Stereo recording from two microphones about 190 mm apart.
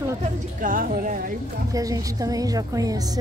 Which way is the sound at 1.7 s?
20° right (ahead or behind).